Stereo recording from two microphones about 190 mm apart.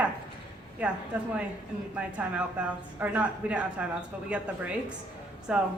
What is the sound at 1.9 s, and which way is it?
A man's voice, 5° right (ahead or behind).